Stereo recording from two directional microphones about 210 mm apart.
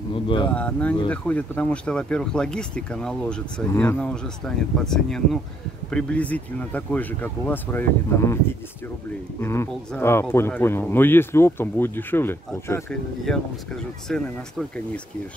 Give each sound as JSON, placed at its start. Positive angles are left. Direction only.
{"t": 0.1, "sound": "a sound", "side_deg": 25}
{"t": 0.6, "sound": "speech", "side_deg": 5}
{"t": 14.0, "sound": "speech", "side_deg": 0}